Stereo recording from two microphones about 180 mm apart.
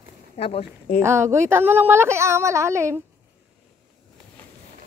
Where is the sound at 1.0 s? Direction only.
15° right (ahead or behind).